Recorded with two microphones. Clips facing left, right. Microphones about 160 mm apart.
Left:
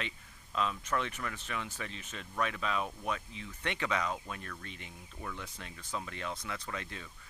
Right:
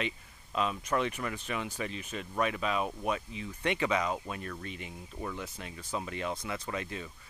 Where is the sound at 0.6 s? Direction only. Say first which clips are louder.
Right 3 dB; 15° right (ahead or behind).